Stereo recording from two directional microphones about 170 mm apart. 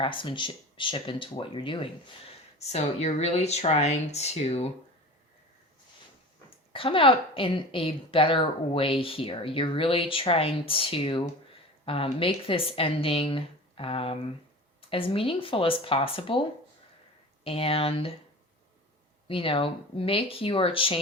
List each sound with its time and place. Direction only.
0.0 s a woman's voice: 30° left (ahead or behind)
6.7 s a woman's voice: 30° left (ahead or behind)
17.4 s a woman's voice: 35° left (ahead or behind)
19.3 s a woman's voice: 30° left (ahead or behind)